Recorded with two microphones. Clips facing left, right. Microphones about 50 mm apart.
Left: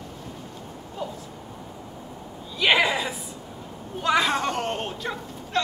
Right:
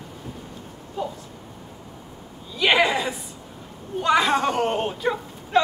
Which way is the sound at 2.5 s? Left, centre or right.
Centre.